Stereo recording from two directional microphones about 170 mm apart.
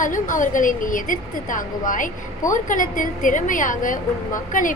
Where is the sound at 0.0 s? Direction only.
50° left (ahead or behind).